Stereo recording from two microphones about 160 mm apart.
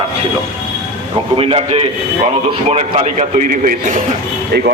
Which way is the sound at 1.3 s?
35° right (ahead or behind).